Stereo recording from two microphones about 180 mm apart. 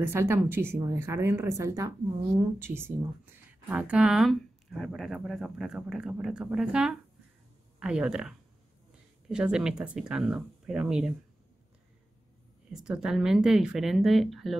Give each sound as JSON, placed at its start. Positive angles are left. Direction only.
{"t": 0.0, "sound": "a woman's voice", "side_deg": -15}
{"t": 12.7, "sound": "speech", "side_deg": -5}